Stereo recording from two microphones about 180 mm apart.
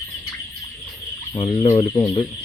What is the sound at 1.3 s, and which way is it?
Speech, 30° left (ahead or behind).